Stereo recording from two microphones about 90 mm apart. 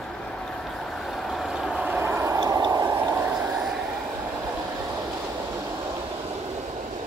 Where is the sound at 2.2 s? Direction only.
40° right (ahead or behind).